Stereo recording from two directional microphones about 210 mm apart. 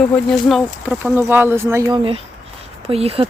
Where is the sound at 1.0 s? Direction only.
10° right (ahead or behind).